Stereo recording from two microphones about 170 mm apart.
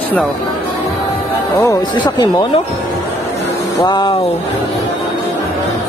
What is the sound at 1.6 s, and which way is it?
Speech, 25° left (ahead or behind).